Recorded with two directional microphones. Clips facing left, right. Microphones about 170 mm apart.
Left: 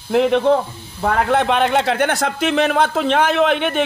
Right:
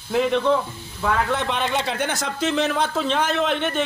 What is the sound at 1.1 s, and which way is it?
A man's voice, 60° left (ahead or behind).